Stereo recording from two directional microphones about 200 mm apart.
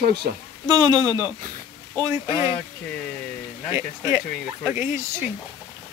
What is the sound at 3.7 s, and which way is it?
Speech, 10° right (ahead or behind).